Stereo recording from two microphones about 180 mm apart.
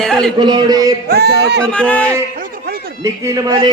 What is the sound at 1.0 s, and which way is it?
Speech, 65° right (ahead or behind).